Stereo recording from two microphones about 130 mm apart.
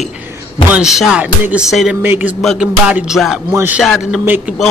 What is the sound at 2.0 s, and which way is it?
Speech, 15° right (ahead or behind).